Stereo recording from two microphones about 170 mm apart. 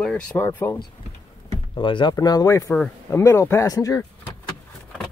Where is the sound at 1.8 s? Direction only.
30° left (ahead or behind).